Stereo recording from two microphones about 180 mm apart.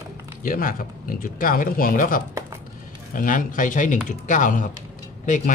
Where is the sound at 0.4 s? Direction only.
50° left (ahead or behind).